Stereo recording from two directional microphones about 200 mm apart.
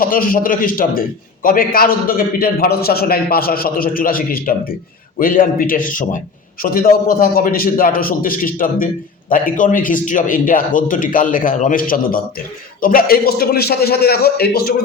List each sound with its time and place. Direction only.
0.0 s a man's voice: 45° left (ahead or behind)